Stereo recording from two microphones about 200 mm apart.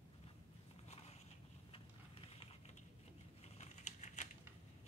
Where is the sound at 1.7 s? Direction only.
30° left (ahead or behind).